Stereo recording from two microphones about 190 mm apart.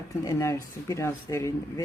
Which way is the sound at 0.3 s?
15° left (ahead or behind).